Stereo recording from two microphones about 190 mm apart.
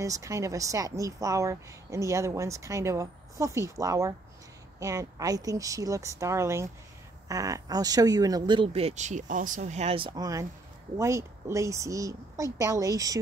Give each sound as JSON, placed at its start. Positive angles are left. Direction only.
{"t": 0.0, "sound": "a woman's voice", "side_deg": -15}